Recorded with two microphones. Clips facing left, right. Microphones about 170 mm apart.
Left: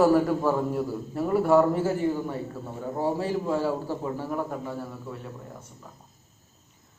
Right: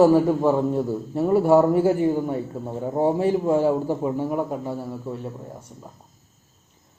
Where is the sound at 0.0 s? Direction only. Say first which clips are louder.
Right 4 dB; 25° right (ahead or behind).